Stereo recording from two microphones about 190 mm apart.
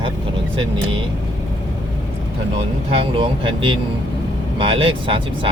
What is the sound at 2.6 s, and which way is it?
Speech, 30° right (ahead or behind).